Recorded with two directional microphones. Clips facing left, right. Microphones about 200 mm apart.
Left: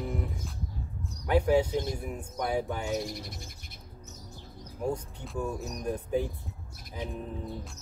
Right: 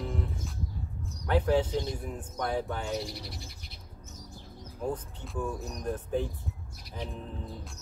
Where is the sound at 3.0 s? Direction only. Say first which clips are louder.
Left 2 dB; 50° left (ahead or behind).